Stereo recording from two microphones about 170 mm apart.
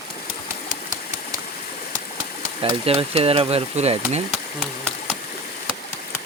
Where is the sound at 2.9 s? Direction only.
35° right (ahead or behind).